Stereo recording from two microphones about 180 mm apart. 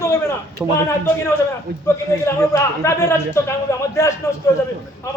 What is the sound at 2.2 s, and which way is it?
A man's voice, 15° left (ahead or behind).